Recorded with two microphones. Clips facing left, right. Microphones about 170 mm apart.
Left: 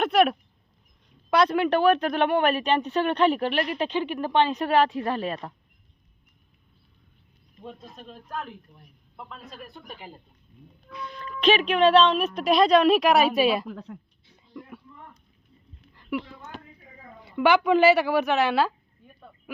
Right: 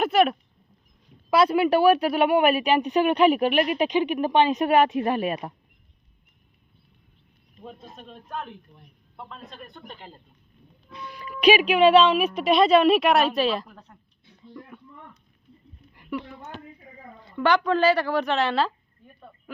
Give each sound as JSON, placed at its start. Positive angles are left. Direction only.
{"t": 0.0, "sound": "a man's voice", "side_deg": 0}
{"t": 7.6, "sound": "a man's voice", "side_deg": 0}
{"t": 11.1, "sound": "a man's voice", "side_deg": -10}
{"t": 13.7, "sound": "speech", "side_deg": 90}
{"t": 14.6, "sound": "speech", "side_deg": 5}
{"t": 16.1, "sound": "a woman's voice", "side_deg": 10}